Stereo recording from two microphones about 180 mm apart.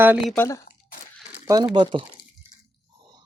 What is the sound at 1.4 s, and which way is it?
Speech, 20° right (ahead or behind).